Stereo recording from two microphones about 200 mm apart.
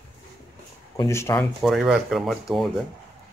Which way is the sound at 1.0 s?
15° left (ahead or behind).